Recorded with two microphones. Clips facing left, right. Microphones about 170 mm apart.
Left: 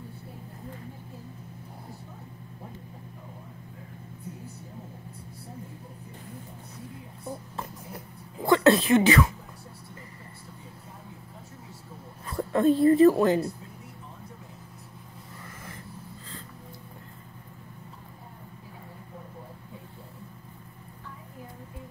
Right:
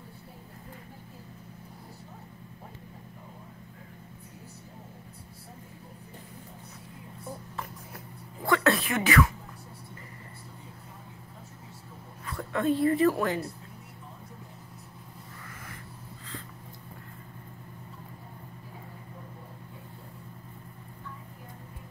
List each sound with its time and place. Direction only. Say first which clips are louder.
8.5 s speech: left 6 dB; 25° left (ahead or behind)
12.3 s a woman's voice: left 5 dB; 35° left (ahead or behind)